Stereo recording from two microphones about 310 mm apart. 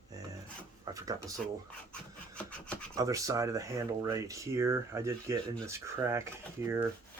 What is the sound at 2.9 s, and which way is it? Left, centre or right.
Speech, centre.